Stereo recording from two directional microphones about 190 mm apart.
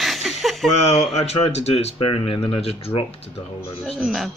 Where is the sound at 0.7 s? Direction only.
35° left (ahead or behind).